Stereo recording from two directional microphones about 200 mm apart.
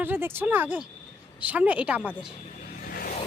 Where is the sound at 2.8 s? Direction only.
45° left (ahead or behind).